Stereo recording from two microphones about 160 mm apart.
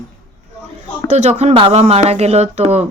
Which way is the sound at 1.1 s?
45° right (ahead or behind).